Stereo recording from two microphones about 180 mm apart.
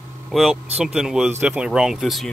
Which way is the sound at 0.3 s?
Centre (ahead or behind).